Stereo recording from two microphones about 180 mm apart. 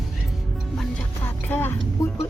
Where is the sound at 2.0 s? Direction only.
15° left (ahead or behind).